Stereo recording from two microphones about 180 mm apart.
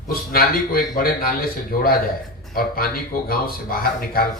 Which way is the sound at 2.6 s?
55° left (ahead or behind).